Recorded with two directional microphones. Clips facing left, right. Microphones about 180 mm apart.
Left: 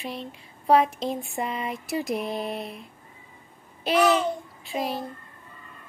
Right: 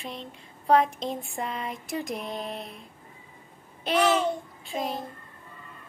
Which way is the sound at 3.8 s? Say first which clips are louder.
Left 2 dB; 5° left (ahead or behind).